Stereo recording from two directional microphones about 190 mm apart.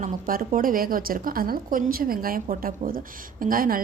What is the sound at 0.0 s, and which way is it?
A woman's voice, 45° right (ahead or behind).